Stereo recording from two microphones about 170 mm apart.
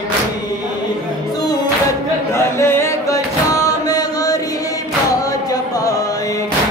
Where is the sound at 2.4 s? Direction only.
15° left (ahead or behind).